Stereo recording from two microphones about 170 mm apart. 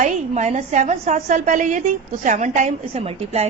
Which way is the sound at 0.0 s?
45° right (ahead or behind).